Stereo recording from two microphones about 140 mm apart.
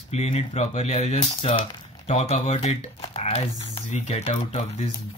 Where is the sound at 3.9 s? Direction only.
55° left (ahead or behind).